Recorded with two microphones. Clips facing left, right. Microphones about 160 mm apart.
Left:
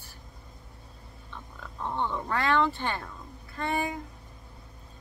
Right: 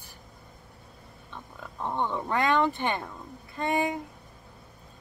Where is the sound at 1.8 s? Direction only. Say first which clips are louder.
Right 1 dB; 15° right (ahead or behind).